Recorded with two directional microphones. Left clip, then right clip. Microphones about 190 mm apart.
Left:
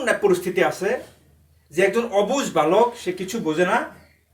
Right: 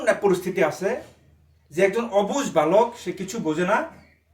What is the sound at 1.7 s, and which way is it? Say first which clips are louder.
Speech: left 2 dB; 25° right (ahead or behind).